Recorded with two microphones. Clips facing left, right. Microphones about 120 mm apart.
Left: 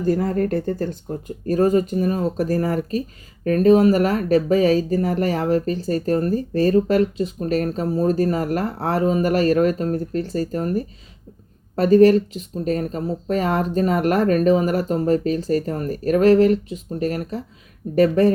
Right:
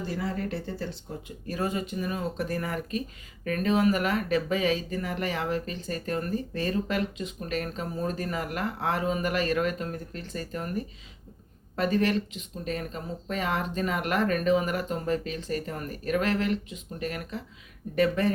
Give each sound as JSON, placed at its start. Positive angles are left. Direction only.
{"t": 0.0, "sound": "speech", "side_deg": 45}